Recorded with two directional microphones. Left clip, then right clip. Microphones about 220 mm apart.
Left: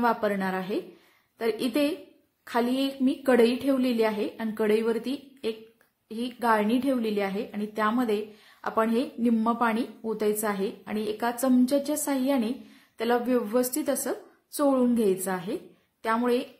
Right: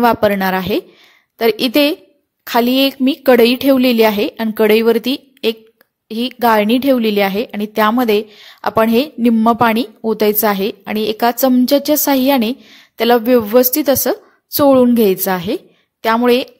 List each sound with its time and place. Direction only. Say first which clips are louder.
0.0 s a woman's voice: right 13 dB; 40° right (ahead or behind)